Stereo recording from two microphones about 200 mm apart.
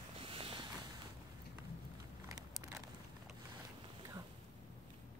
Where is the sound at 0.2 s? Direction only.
25° right (ahead or behind).